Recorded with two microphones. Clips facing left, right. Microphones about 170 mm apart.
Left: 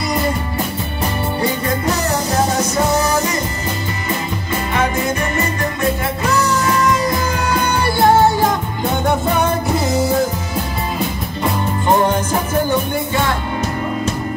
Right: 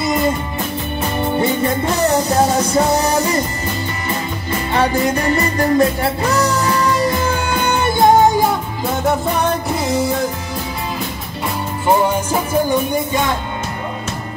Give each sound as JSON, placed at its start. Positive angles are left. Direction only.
{"t": 4.7, "sound": "music", "side_deg": -35}
{"t": 12.0, "sound": "music", "side_deg": -10}